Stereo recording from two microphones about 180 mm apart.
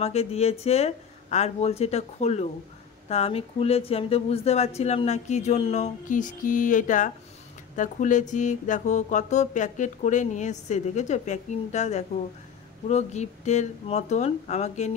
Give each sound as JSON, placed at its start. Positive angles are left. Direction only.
{"t": 0.0, "sound": "speech", "side_deg": 35}
{"t": 7.7, "sound": "mantra", "side_deg": 45}
{"t": 12.8, "sound": "speech", "side_deg": 40}